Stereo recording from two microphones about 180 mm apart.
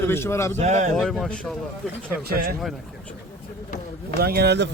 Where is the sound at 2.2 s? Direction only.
55° right (ahead or behind).